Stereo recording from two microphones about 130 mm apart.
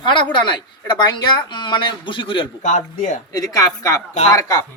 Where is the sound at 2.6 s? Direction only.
75° left (ahead or behind).